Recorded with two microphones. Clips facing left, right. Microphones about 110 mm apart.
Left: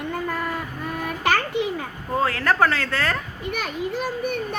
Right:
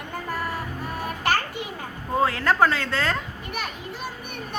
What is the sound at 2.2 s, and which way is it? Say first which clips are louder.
Speech: even; 20° right (ahead or behind).